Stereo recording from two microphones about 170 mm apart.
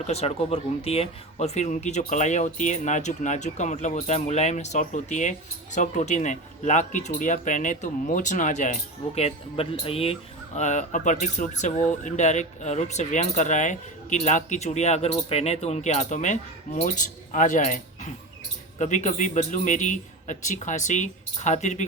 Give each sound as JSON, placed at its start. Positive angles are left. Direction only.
{"t": 0.0, "sound": "speech", "side_deg": 40}